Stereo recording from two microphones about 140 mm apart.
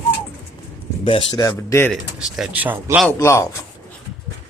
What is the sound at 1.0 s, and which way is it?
Speech, 40° left (ahead or behind).